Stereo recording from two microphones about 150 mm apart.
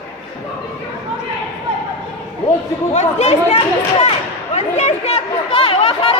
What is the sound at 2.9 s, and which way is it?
Chatter, 50° left (ahead or behind).